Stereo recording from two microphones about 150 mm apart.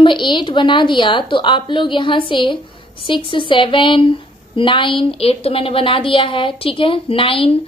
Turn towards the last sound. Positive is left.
turn(degrees=35)  # may be behind; listen again after turning